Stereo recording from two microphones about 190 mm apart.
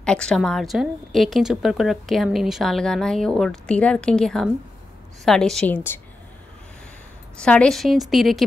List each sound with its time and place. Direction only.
0.0 s a woman's voice: 5° left (ahead or behind)
7.3 s a woman's voice: 5° left (ahead or behind)